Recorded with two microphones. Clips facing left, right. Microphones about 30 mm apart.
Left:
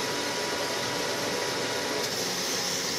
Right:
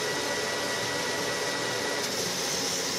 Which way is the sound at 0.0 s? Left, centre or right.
Centre.